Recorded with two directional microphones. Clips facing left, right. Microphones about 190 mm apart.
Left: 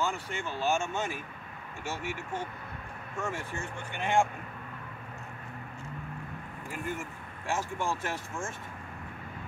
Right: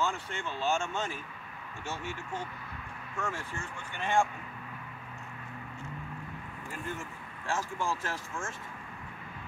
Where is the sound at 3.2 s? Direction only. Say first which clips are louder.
Left 2 dB; 20° left (ahead or behind).